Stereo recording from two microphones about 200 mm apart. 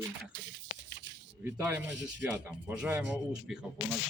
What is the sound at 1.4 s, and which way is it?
Speech, 10° right (ahead or behind).